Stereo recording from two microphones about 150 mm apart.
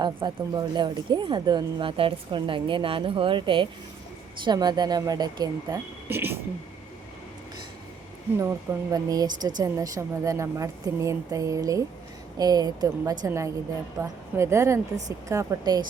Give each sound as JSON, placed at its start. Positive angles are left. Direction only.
{"t": 0.0, "sound": "a woman's voice", "side_deg": -30}
{"t": 8.4, "sound": "a woman's voice", "side_deg": -20}